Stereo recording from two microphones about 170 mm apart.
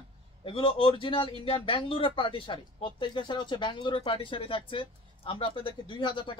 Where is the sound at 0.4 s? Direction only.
30° left (ahead or behind).